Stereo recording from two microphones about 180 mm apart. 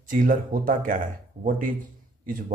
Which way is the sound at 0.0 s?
50° right (ahead or behind).